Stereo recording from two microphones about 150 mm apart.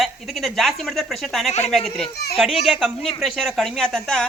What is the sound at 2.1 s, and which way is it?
Speech, 90° left.